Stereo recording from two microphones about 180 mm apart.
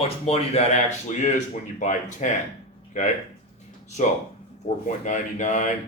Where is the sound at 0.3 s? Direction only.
40° left (ahead or behind).